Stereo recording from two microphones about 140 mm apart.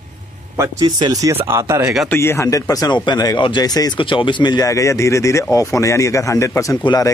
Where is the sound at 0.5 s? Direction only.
25° right (ahead or behind).